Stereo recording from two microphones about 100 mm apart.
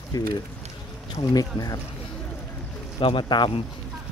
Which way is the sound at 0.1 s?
40° left (ahead or behind).